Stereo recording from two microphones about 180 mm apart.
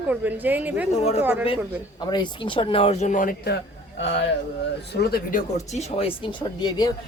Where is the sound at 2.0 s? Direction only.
25° left (ahead or behind); by 3.6 s 55° left (ahead or behind).